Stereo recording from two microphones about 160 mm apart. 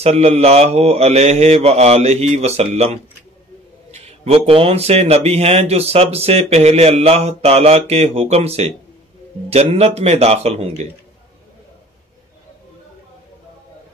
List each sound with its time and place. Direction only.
0.0 s speech: 40° right (ahead or behind)